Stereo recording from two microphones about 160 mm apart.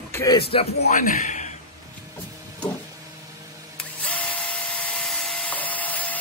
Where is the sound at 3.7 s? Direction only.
10° left (ahead or behind).